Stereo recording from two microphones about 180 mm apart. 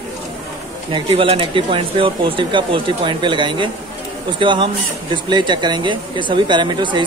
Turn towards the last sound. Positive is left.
turn(degrees=-25)  # may be behind; listen again after turning